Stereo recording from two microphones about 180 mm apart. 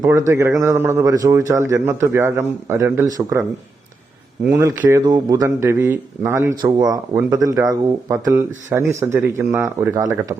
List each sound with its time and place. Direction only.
0.0 s a man's voice: 15° right (ahead or behind)
4.4 s a man's voice: 10° right (ahead or behind)